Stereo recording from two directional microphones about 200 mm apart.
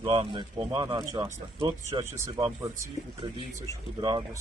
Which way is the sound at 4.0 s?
20° right (ahead or behind).